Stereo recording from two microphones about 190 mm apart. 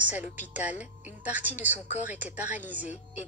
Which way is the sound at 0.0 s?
10° right (ahead or behind).